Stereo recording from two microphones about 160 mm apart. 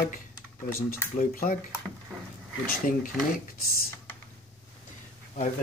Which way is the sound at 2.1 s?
Centre (ahead or behind).